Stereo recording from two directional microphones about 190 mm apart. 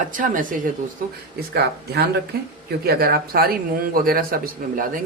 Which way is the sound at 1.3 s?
60° right (ahead or behind).